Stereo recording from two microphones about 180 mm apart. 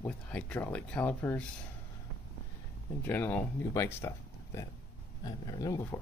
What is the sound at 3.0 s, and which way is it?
Speech, 10° left (ahead or behind).